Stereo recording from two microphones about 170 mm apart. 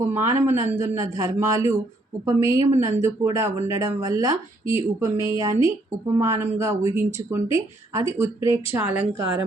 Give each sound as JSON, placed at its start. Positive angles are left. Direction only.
{"t": 0.1, "sound": "speech", "side_deg": -15}